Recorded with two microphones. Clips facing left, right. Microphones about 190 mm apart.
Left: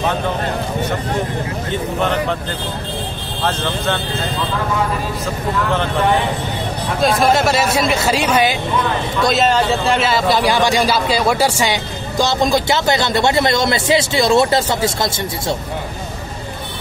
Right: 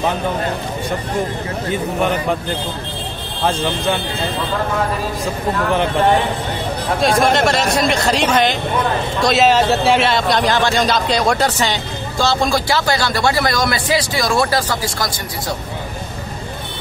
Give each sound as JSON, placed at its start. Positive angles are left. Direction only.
{"t": 1.7, "sound": "speech", "side_deg": -10}
{"t": 3.4, "sound": "speech", "side_deg": -15}
{"t": 7.0, "sound": "a man's voice", "side_deg": 0}